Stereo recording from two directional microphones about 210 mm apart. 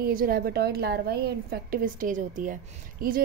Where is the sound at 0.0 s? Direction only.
45° right (ahead or behind).